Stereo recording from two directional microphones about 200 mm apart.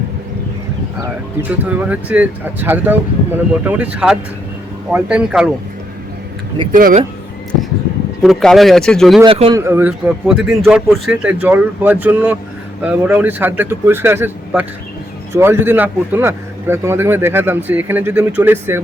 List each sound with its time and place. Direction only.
1.0 s a man's voice: 10° right (ahead or behind)
4.9 s speech: 5° right (ahead or behind)
6.7 s speech: 40° right (ahead or behind)
8.2 s speech: centre (ahead or behind)
9.2 s speech: 25° right (ahead or behind)
9.6 s a man's voice: 10° right (ahead or behind)